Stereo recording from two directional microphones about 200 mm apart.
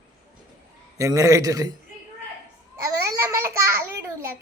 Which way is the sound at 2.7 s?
15° right (ahead or behind).